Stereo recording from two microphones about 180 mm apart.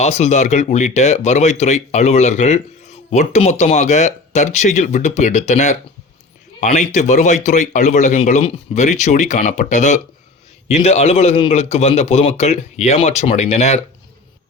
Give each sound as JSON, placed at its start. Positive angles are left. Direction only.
{"t": 0.0, "sound": "speech", "side_deg": 40}